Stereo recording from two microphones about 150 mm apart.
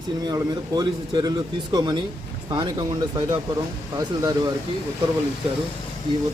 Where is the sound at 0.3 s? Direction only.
25° right (ahead or behind).